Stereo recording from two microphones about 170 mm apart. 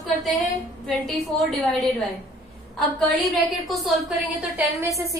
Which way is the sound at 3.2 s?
Centre (ahead or behind).